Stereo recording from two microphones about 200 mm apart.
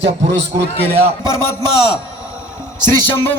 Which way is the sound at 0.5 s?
15° right (ahead or behind).